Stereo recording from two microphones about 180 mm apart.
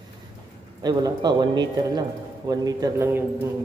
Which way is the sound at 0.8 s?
25° right (ahead or behind).